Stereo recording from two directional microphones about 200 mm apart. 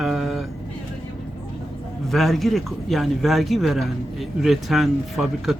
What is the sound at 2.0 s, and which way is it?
Speech, centre (ahead or behind).